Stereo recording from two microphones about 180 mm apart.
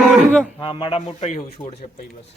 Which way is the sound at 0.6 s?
30° left (ahead or behind).